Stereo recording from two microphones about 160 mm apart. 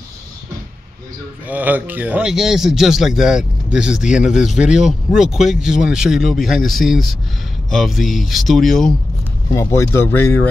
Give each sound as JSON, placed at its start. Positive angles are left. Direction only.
{"t": 1.5, "sound": "a man's voice", "side_deg": -10}
{"t": 9.5, "sound": "speech", "side_deg": 20}